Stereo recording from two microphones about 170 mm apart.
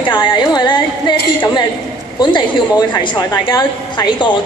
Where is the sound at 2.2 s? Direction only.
25° left (ahead or behind).